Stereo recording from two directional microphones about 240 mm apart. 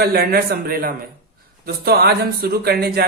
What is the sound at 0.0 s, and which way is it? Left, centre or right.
Speech, right.